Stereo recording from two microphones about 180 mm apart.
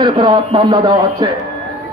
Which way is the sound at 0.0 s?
25° right (ahead or behind).